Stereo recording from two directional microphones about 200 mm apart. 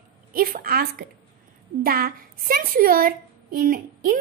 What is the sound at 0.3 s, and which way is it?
A woman's voice, 45° right (ahead or behind).